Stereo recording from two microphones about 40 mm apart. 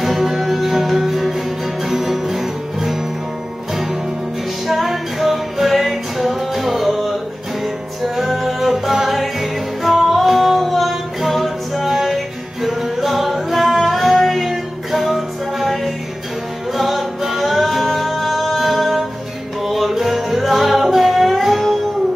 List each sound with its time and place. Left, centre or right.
0.0 s music: centre
4.6 s music: centre
8.2 s music: centre